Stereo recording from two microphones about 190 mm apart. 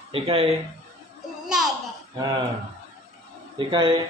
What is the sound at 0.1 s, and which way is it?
Speech, 30° right (ahead or behind).